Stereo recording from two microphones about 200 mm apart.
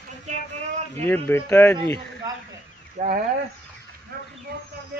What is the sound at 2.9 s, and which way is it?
Speech, 45° right (ahead or behind).